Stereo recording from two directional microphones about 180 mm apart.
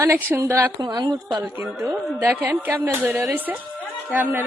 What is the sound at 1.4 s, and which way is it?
A woman's voice, 5° right (ahead or behind).